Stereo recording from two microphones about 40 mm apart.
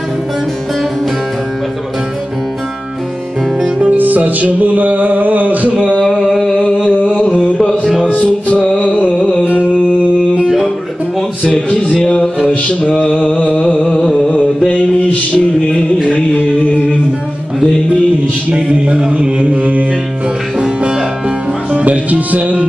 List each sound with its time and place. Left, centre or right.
3.9 s music: right
6.0 s a sound: centre
7.5 s music: centre
8.1 s music: left
11.5 s a sound: left
13.7 s a sound: left
14.7 s music: left
18.7 s mantra: right
21.7 s music: right